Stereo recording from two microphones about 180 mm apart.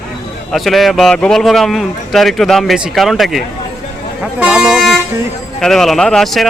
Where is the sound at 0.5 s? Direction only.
Centre (ahead or behind).